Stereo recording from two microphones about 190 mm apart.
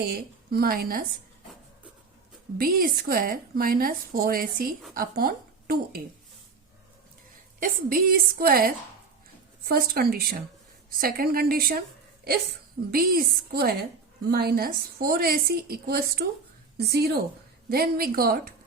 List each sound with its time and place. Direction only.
0.1 s a woman's voice: 50° right (ahead or behind)
2.6 s a woman's voice: 50° right (ahead or behind)
7.6 s a woman's voice: 45° right (ahead or behind)
12.9 s a woman's voice: 50° right (ahead or behind)